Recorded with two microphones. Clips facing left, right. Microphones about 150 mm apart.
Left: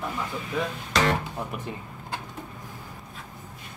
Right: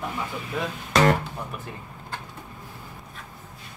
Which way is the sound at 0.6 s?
5° right (ahead or behind).